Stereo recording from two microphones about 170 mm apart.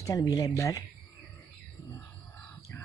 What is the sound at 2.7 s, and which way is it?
Bird, 15° left (ahead or behind).